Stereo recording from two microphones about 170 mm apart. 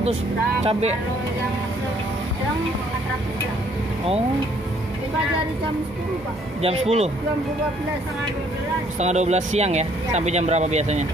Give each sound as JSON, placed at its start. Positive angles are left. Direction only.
{"t": 0.7, "sound": "speech", "side_deg": -40}
{"t": 6.6, "sound": "speech", "side_deg": -40}
{"t": 9.0, "sound": "speech", "side_deg": -40}